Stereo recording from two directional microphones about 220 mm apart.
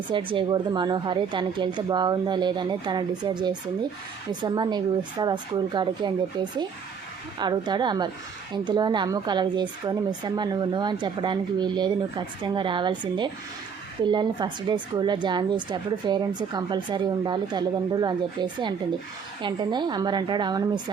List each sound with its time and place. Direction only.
0.1 s a woman's voice: 25° right (ahead or behind)
7.3 s a woman's voice: 20° right (ahead or behind)